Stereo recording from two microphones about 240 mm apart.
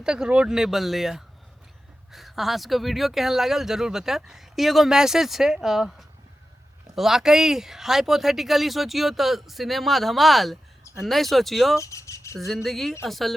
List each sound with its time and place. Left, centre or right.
0.0 s speech: centre
11.8 s a sound: centre
12.6 s speech: centre